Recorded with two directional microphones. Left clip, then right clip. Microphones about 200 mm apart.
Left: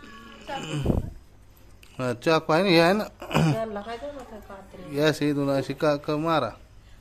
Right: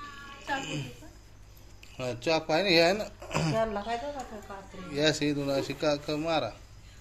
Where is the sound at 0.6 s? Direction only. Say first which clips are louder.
Left 4 dB; 55° left (ahead or behind).